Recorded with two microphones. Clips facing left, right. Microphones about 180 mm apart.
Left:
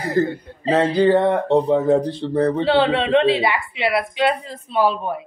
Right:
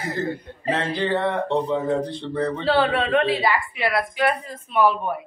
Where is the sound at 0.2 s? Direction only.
40° left (ahead or behind).